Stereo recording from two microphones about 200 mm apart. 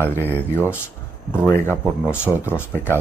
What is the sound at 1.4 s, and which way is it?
Speech, 10° left (ahead or behind).